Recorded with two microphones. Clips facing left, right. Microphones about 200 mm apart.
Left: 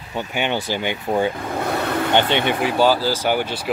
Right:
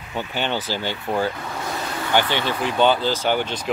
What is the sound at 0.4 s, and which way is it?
Speech, 15° left (ahead or behind).